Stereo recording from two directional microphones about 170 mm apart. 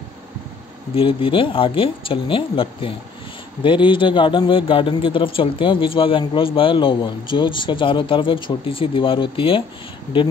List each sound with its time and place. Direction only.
0.9 s a man's voice: 30° left (ahead or behind)